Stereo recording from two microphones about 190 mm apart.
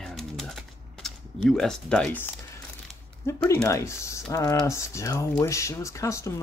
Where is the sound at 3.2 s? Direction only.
15° left (ahead or behind).